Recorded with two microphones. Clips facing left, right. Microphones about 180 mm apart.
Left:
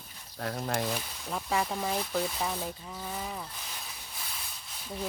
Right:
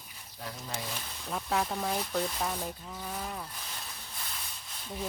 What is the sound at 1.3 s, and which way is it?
Speech, centre (ahead or behind).